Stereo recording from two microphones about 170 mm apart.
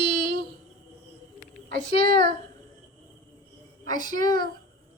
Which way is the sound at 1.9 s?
30° left (ahead or behind).